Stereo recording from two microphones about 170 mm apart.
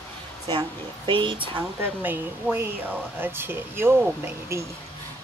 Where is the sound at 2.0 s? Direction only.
10° right (ahead or behind).